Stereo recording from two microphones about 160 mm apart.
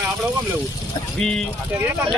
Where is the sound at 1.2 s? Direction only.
5° left (ahead or behind).